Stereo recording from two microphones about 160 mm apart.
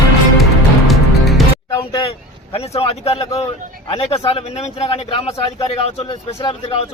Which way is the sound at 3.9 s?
40° left (ahead or behind).